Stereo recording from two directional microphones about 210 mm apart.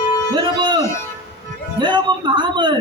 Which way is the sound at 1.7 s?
20° right (ahead or behind).